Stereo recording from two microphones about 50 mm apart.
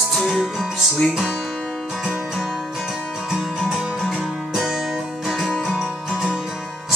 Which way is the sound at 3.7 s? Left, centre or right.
Centre.